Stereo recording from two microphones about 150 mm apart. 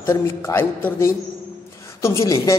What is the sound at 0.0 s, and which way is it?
A man's voice, 20° left (ahead or behind).